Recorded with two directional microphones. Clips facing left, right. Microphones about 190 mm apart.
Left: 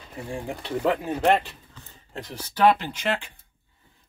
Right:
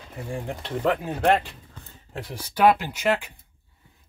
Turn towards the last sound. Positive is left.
turn(degrees=-10)  # may be behind; listen again after turning